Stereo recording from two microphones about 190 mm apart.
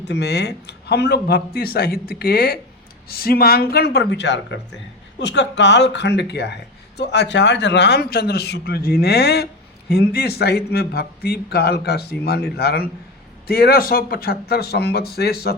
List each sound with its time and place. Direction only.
0.0 s speech: 60° left (ahead or behind)